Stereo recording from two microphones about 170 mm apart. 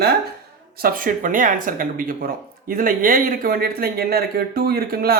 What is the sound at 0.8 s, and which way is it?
Speech, 55° right (ahead or behind).